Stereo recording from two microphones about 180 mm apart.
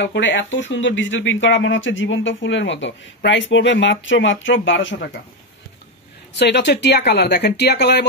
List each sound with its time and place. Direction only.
0.0 s speech: 80° left
6.3 s speech: 70° left (ahead or behind)